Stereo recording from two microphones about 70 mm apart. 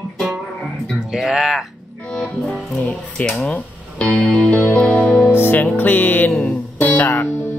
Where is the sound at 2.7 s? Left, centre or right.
Left.